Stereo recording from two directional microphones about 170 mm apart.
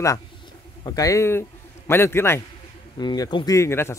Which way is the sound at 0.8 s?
20° left (ahead or behind).